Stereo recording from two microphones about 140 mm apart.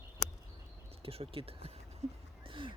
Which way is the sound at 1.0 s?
45° right (ahead or behind).